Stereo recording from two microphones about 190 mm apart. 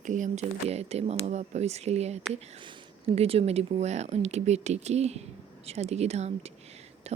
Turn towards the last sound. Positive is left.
turn(degrees=-35)  # may be behind; listen again after turning